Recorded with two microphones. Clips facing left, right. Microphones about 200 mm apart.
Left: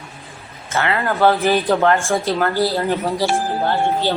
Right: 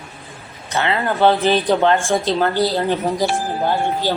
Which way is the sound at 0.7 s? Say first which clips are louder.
Even; 20° right (ahead or behind).